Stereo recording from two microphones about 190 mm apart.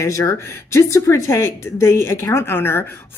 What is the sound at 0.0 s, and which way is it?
Speech, 15° left (ahead or behind).